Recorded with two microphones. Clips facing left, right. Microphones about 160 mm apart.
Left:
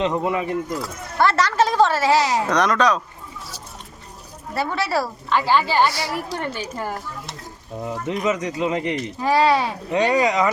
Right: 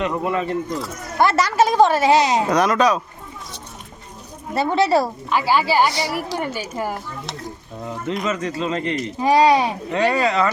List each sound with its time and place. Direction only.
0.0 s speech: 20° left (ahead or behind)
1.2 s a woman's voice: 10° right (ahead or behind)
2.5 s a woman's voice: 5° right (ahead or behind)
4.5 s speech: 20° right (ahead or behind)
5.3 s a woman's voice: 10° right (ahead or behind)
8.2 s speech: 15° left (ahead or behind)
9.1 s a woman's voice: 15° right (ahead or behind)
9.9 s speech: 15° left (ahead or behind)